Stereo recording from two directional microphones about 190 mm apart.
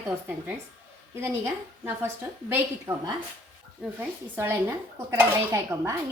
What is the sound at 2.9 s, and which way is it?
Speech, 25° right (ahead or behind).